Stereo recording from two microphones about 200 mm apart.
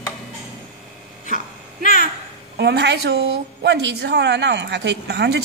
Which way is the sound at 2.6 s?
55° right (ahead or behind).